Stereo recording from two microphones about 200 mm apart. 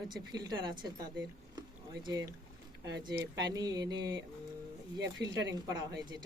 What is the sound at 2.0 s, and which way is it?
Speech, 20° right (ahead or behind).